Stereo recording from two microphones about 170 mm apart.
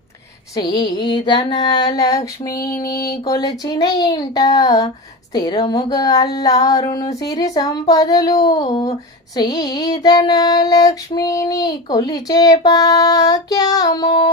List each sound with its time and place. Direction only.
0.5 s child singing: 25° left (ahead or behind)